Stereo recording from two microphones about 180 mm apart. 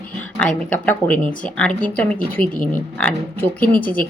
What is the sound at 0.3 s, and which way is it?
Speech, 5° left (ahead or behind).